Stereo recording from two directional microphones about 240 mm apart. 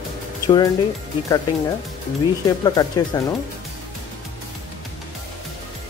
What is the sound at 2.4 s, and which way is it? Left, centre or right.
Speech, centre.